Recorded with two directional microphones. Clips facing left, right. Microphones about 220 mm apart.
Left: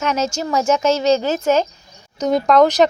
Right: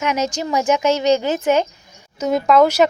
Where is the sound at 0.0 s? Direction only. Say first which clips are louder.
Even; 15° right (ahead or behind).